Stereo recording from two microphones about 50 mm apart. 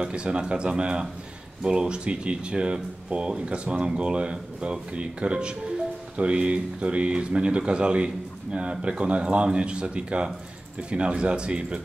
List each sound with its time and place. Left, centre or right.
0.0 s speech: centre